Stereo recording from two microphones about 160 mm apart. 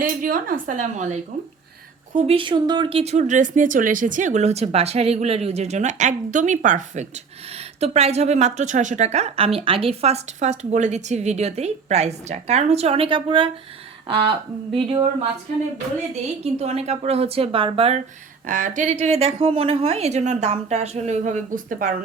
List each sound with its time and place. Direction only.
0.0 s a woman's voice: 60° right (ahead or behind)
2.1 s speech: 35° right (ahead or behind)
14.7 s a woman's voice: 35° right (ahead or behind)
16.4 s a woman's voice: 40° right (ahead or behind)
18.4 s speech: 55° right (ahead or behind)